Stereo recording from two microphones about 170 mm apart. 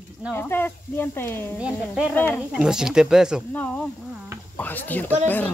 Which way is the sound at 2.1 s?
10° left (ahead or behind).